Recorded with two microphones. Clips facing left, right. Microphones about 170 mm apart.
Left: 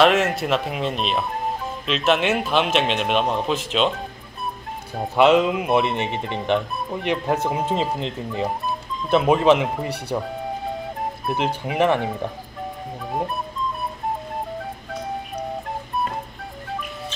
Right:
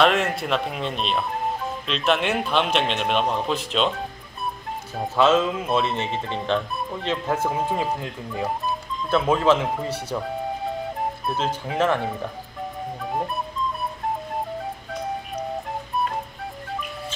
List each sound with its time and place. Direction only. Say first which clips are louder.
0.0 s a man's voice: left 3 dB; centre (ahead or behind)
5.1 s speech: left 3 dB; 15° left (ahead or behind)
11.3 s speech: left 4 dB; 15° left (ahead or behind)